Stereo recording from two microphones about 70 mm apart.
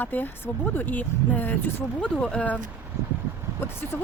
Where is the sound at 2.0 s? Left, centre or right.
Centre.